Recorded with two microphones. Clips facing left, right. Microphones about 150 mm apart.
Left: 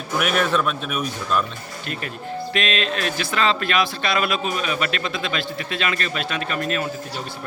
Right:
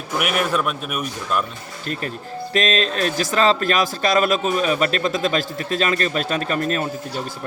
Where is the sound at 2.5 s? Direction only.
40° right (ahead or behind).